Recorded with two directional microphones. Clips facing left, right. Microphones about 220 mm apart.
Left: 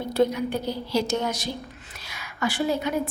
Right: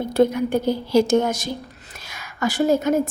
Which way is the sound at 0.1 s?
50° right (ahead or behind).